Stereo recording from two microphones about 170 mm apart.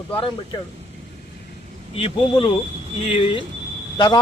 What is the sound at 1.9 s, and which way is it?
Speech, 30° left (ahead or behind).